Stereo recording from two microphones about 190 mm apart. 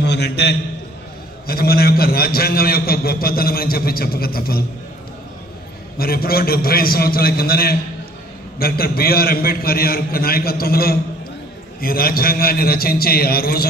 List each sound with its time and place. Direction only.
0.0 s a man's voice: 60° left (ahead or behind)
5.9 s a man's voice: 50° left (ahead or behind)